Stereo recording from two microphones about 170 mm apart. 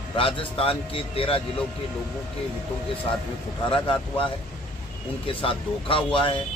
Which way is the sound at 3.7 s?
30° left (ahead or behind).